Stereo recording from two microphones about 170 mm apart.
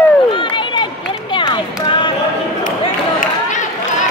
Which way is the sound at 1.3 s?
25° left (ahead or behind).